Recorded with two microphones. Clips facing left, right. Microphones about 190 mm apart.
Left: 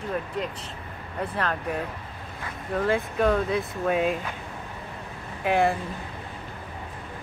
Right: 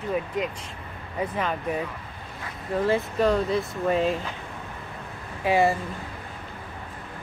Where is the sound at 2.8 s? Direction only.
Centre (ahead or behind).